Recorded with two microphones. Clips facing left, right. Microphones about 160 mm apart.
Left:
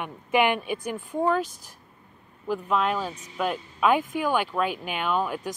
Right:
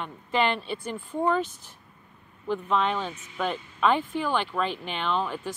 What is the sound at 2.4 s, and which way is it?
Speech, 5° left (ahead or behind).